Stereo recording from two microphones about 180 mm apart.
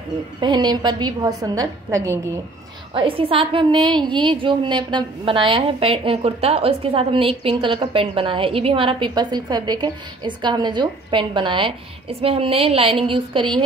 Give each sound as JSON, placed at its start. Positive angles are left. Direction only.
{"t": 0.4, "sound": "a woman's voice", "side_deg": -25}
{"t": 2.9, "sound": "a woman's voice", "side_deg": -30}